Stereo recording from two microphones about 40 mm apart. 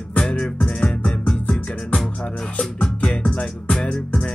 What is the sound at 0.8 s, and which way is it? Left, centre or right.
Music, left.